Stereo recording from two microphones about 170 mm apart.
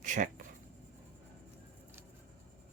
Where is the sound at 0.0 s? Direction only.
50° right (ahead or behind).